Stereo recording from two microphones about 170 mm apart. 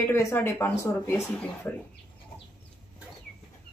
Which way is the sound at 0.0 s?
15° left (ahead or behind).